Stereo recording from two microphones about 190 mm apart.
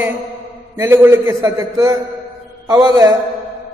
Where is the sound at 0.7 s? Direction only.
10° right (ahead or behind).